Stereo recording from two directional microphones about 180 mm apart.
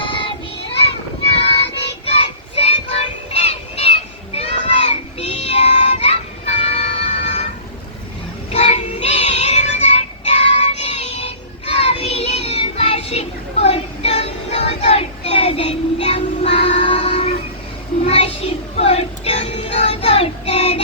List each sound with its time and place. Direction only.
0.0 s child singing: 30° left (ahead or behind)
2.0 s child singing: 35° left (ahead or behind)
8.4 s music: 35° left (ahead or behind)
11.7 s child singing: 35° left (ahead or behind)
18.0 s music: 35° left (ahead or behind)